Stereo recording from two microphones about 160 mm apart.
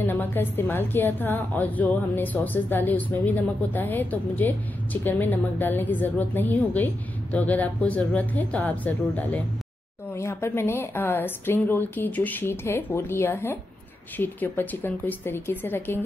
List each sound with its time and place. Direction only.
0.0 s a woman's voice: 10° left (ahead or behind)